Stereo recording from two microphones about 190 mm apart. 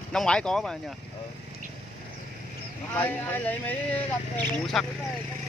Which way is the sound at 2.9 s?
10° left (ahead or behind).